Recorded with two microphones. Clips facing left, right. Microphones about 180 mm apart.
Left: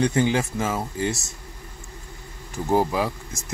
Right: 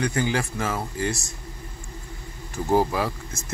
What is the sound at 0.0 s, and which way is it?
Speech, 25° left (ahead or behind).